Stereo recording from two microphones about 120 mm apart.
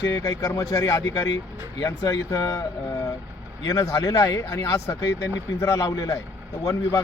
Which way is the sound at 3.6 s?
25° left (ahead or behind).